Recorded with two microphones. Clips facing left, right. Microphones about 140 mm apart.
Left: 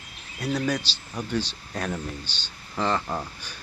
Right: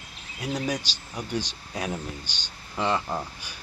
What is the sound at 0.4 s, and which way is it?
Speech, 10° right (ahead or behind).